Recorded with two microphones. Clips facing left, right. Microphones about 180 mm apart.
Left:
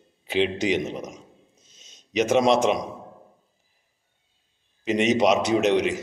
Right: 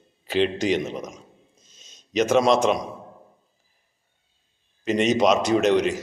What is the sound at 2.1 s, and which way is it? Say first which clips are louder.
Speech: right 1 dB; 15° left (ahead or behind).